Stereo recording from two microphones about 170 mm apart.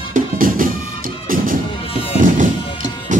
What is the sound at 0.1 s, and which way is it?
Music, 55° right (ahead or behind).